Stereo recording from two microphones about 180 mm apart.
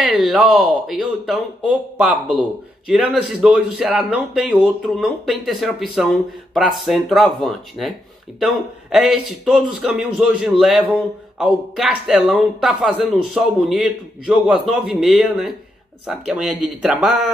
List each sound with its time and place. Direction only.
0.0 s speech: 5° right (ahead or behind)
8.9 s speech: centre (ahead or behind)